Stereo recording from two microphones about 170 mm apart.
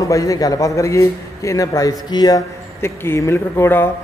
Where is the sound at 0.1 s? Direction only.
20° left (ahead or behind).